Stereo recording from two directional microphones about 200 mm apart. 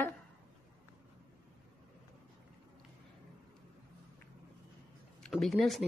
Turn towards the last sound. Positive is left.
turn(degrees=0)  # may be behind; listen again after turning